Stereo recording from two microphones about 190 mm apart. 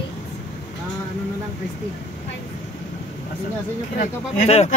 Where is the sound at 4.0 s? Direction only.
35° left (ahead or behind).